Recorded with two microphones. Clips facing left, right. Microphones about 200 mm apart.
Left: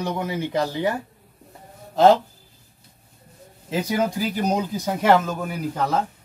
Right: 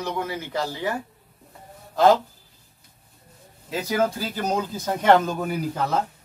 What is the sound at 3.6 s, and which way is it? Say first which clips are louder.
Speech: left 1 dB; 15° left (ahead or behind).